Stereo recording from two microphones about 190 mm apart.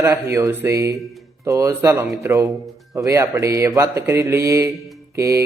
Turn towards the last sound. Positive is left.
turn(degrees=-15)  # may be behind; listen again after turning